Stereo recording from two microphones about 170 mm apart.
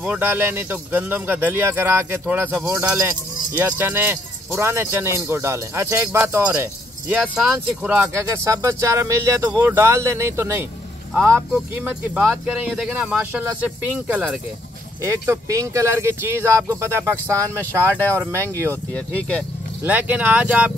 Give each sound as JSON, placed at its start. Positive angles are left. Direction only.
{"t": 0.0, "sound": "speech", "side_deg": -10}
{"t": 15.0, "sound": "speech", "side_deg": -20}
{"t": 18.7, "sound": "speech", "side_deg": 10}
{"t": 19.8, "sound": "speech", "side_deg": -10}